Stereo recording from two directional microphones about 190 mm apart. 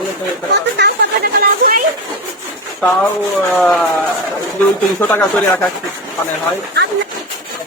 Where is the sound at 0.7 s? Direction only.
55° right (ahead or behind).